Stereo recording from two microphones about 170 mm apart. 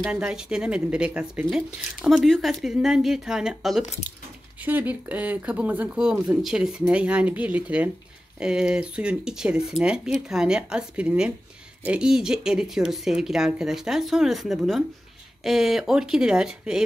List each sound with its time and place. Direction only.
0.0 s speech: 5° right (ahead or behind)
4.1 s speech: 20° left (ahead or behind)
4.6 s speech: 10° right (ahead or behind)